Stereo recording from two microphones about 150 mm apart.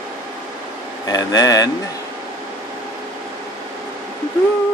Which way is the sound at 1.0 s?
25° left (ahead or behind).